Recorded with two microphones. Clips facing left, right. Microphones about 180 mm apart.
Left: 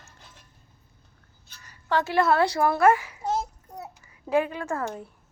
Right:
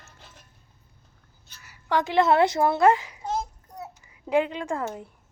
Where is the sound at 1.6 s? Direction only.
15° right (ahead or behind).